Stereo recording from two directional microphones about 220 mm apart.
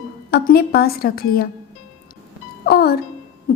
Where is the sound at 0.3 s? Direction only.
45° left (ahead or behind).